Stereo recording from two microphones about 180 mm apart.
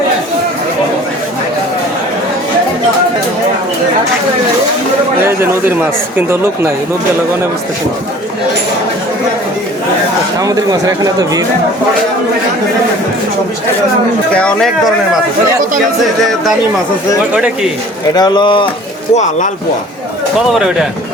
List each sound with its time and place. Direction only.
5.2 s speech: 10° right (ahead or behind)
10.4 s speech: 20° right (ahead or behind)
14.3 s a man's voice: 5° left (ahead or behind)
17.3 s speech: 5° right (ahead or behind)
18.1 s speech: 25° left (ahead or behind)
19.1 s speech: 40° left (ahead or behind)
20.5 s a man's voice: centre (ahead or behind)